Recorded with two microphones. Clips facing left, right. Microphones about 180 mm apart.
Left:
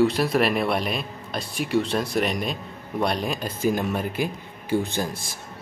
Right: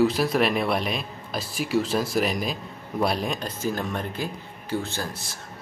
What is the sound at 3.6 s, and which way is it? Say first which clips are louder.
Speech: left 6 dB; 15° left (ahead or behind).